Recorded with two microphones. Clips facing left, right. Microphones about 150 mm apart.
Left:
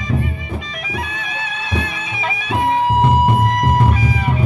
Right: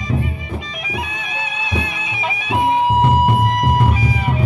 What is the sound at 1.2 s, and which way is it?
Music, 10° right (ahead or behind).